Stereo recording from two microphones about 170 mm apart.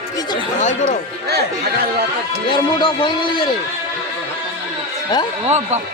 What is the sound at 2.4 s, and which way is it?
Speech, 30° left (ahead or behind).